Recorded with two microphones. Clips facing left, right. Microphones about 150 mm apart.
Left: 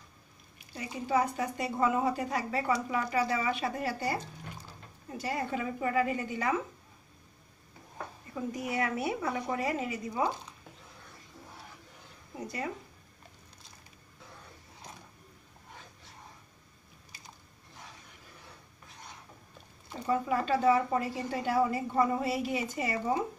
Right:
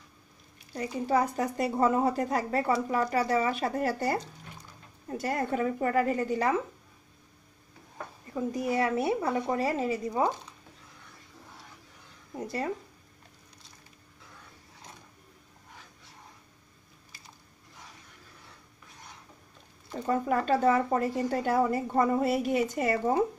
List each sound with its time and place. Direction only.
0.7 s a woman's voice: 40° right (ahead or behind)
5.2 s a woman's voice: 50° right (ahead or behind)
8.6 s a woman's voice: 30° right (ahead or behind)
12.4 s a woman's voice: 35° right (ahead or behind)
20.1 s a woman's voice: 50° right (ahead or behind)